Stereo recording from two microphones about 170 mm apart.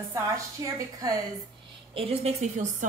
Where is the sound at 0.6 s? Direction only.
25° right (ahead or behind).